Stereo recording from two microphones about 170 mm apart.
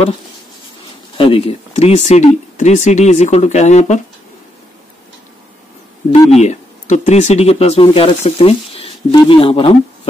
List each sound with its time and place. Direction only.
1.1 s speech: 30° left (ahead or behind)
6.1 s speech: 40° left (ahead or behind)